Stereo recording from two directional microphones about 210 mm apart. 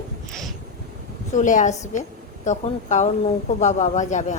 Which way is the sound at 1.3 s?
35° left (ahead or behind).